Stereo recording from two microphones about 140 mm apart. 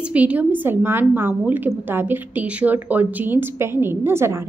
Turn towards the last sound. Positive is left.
turn(degrees=-20)  # may be behind; listen again after turning